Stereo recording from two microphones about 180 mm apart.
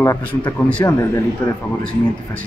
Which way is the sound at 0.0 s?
15° left (ahead or behind).